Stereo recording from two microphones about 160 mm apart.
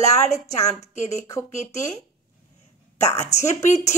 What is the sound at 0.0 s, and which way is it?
A woman's voice, 45° left (ahead or behind).